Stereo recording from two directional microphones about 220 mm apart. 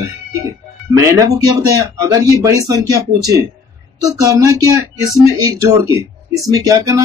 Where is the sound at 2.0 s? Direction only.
15° right (ahead or behind).